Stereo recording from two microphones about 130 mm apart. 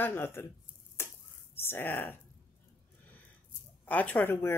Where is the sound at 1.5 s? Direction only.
15° left (ahead or behind).